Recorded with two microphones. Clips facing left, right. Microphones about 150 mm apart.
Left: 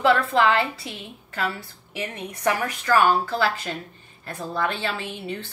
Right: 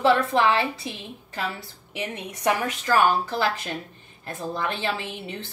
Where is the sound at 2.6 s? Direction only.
15° right (ahead or behind).